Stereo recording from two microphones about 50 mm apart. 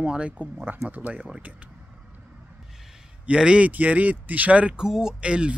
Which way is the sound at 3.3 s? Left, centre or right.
Right.